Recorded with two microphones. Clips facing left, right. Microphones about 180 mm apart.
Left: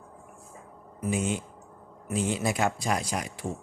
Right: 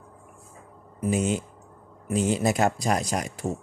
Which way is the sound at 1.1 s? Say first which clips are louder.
Right 4 dB; 40° right (ahead or behind).